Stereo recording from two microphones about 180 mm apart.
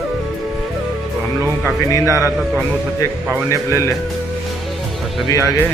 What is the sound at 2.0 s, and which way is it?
Speech, 15° right (ahead or behind).